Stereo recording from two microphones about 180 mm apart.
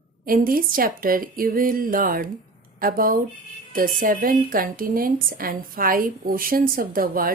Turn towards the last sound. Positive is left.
turn(degrees=-50)  # may be behind; listen again after turning